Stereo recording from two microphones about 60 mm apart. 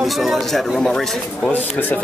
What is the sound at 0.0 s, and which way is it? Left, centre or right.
A man's voice, centre.